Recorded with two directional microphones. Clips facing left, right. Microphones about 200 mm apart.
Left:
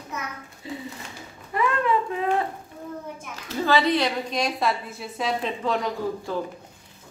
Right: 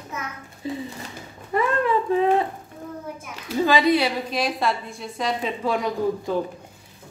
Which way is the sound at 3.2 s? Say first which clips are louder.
Right 6 dB; 10° right (ahead or behind).